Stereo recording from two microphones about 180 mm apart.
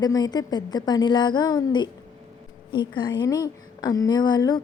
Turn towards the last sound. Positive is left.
turn(degrees=20)  # may be behind; listen again after turning